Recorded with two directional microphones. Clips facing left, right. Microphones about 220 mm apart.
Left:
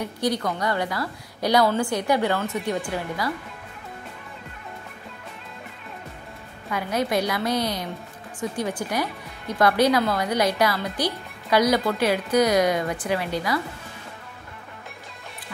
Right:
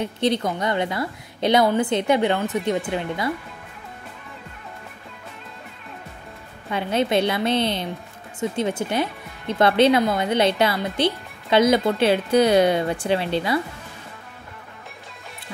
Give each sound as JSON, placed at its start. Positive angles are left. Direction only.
{"t": 0.0, "sound": "speech", "side_deg": -25}
{"t": 6.7, "sound": "speech", "side_deg": -25}